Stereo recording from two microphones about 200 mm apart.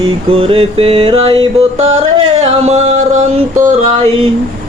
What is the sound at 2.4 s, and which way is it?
Music, 30° right (ahead or behind).